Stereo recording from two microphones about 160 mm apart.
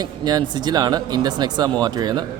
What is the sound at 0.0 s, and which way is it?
Speech, 25° right (ahead or behind).